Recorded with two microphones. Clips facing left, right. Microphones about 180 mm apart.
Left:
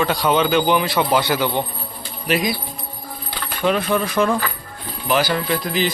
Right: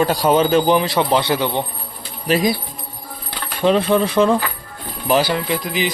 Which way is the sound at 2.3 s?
35° right (ahead or behind).